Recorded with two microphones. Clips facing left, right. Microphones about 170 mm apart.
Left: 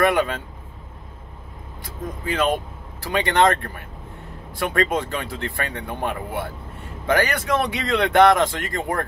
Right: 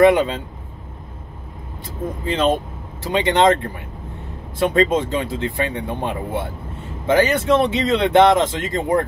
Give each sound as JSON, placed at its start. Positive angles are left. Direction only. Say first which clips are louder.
{"t": 0.0, "sound": "speech", "louder": "right 6 dB", "side_deg": -20}
{"t": 2.2, "sound": "speech", "louder": "right 3 dB", "side_deg": -25}